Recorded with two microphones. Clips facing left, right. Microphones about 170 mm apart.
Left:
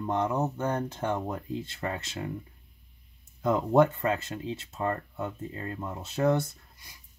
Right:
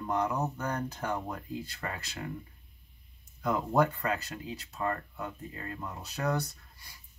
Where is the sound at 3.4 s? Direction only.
25° left (ahead or behind).